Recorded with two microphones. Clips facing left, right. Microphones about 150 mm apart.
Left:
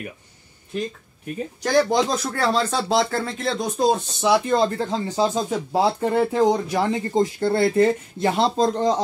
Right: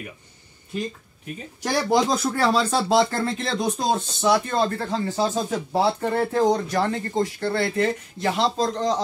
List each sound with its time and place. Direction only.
1.6 s speech: 10° right (ahead or behind)
4.2 s speech: 15° left (ahead or behind)